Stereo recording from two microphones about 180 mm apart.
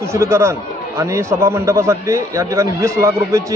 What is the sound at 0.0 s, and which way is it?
A man's voice, 15° right (ahead or behind).